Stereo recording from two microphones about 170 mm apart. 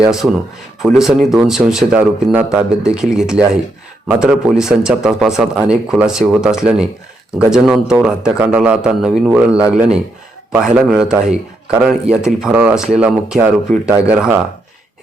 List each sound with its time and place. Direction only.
0.0 s a man's voice: 5° right (ahead or behind)